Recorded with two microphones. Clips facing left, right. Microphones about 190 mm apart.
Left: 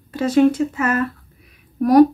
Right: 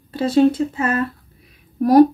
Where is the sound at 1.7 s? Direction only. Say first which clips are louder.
Even; 35° right (ahead or behind).